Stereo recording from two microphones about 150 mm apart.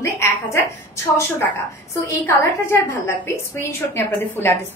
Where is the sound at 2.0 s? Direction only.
15° left (ahead or behind).